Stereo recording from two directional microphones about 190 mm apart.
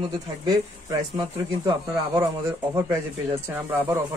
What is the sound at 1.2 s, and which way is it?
Speech, 20° right (ahead or behind).